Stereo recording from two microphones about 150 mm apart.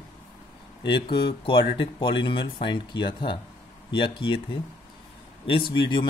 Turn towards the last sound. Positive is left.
turn(degrees=35)  # may be behind; listen again after turning